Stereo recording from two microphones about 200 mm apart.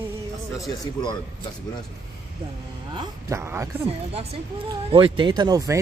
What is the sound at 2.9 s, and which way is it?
Speech, 15° right (ahead or behind).